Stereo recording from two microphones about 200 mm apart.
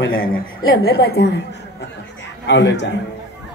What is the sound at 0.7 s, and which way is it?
Speech, 50° left (ahead or behind).